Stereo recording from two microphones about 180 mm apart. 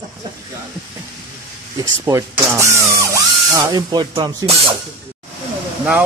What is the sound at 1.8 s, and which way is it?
Speech, 20° right (ahead or behind).